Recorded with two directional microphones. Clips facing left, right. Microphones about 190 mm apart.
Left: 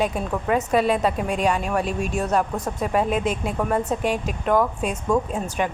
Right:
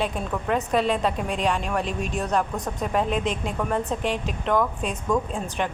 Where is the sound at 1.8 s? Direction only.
45° left (ahead or behind).